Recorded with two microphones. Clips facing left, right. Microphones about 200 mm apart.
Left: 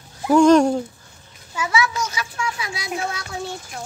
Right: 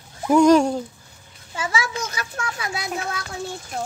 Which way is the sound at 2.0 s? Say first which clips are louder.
Left 2 dB; 55° right (ahead or behind).